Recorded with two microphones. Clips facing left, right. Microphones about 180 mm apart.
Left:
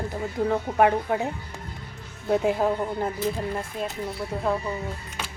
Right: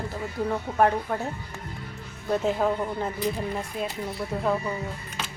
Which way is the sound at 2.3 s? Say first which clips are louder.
Left 2 dB; 15° left (ahead or behind).